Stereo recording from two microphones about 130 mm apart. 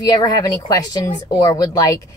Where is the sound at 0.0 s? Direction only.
30° left (ahead or behind).